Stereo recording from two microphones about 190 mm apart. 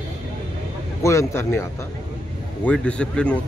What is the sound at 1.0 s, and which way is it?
Speech, 15° left (ahead or behind).